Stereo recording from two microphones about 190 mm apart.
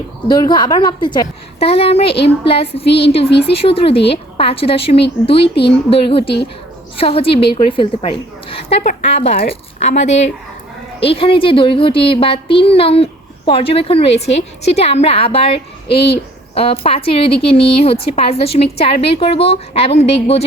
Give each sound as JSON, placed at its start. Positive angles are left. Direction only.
{"t": 0.3, "sound": "a woman's voice", "side_deg": 20}